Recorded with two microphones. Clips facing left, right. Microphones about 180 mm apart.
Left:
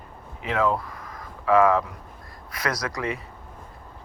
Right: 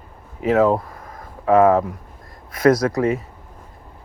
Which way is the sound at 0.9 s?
30° right (ahead or behind).